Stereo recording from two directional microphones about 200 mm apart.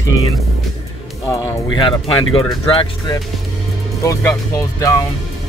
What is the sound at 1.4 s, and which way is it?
Speech, 25° left (ahead or behind).